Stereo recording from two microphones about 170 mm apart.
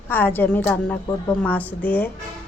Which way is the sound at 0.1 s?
10° left (ahead or behind).